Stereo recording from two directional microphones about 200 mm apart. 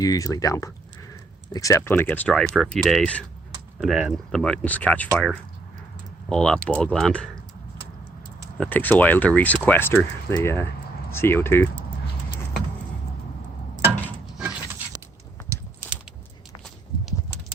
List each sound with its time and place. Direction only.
0.0 s speech: 15° left (ahead or behind)
8.5 s speech: 5° left (ahead or behind)
15.8 s a sound: 10° left (ahead or behind)